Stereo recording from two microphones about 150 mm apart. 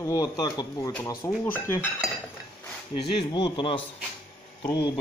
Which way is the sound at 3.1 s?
30° left (ahead or behind).